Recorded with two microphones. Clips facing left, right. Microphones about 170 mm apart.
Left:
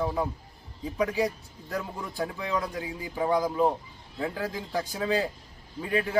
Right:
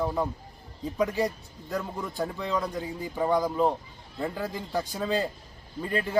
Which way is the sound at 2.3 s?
5° left (ahead or behind).